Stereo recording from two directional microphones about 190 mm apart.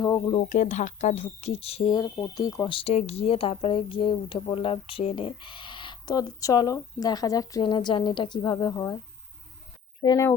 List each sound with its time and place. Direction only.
0.0 s speech: 20° left (ahead or behind)
0.4 s speech: 40° left (ahead or behind); by 2.7 s 20° left (ahead or behind)
2.7 s speech: 35° left (ahead or behind)
10.0 s speech: 20° left (ahead or behind)